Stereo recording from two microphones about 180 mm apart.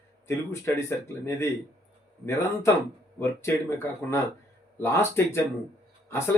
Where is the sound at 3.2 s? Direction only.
15° left (ahead or behind).